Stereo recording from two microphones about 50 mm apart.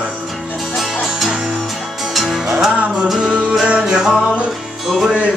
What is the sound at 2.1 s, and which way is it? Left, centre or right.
Music, centre.